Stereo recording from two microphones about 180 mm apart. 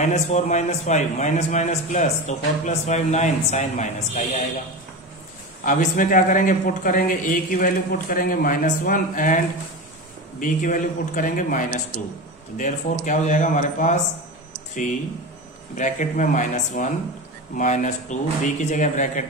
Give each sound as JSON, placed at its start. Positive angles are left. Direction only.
{"t": 0.0, "sound": "a man's voice", "side_deg": 40}
{"t": 5.7, "sound": "a man's voice", "side_deg": 45}
{"t": 10.4, "sound": "a man's voice", "side_deg": 45}
{"t": 15.7, "sound": "a man's voice", "side_deg": 45}